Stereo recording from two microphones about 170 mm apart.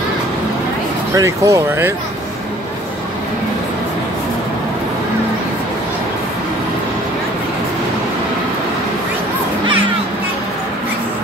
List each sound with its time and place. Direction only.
1.1 s speech: 20° right (ahead or behind)